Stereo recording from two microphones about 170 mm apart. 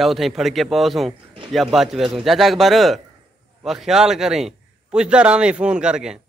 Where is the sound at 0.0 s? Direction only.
Centre (ahead or behind).